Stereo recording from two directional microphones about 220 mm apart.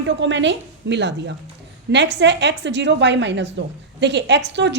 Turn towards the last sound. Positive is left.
turn(degrees=-55)  # may be behind; listen again after turning